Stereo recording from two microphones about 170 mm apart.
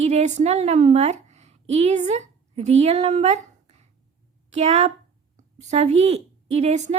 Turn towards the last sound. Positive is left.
turn(degrees=-40)  # may be behind; listen again after turning